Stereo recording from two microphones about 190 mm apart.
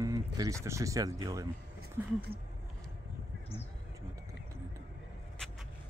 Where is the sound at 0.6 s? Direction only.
15° right (ahead or behind).